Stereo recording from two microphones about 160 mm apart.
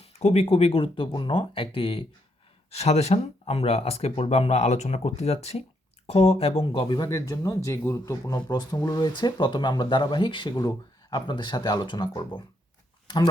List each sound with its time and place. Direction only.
0.0 s speech: 40° left (ahead or behind)